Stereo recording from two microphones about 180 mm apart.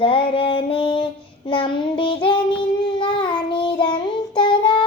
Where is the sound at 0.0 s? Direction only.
30° left (ahead or behind).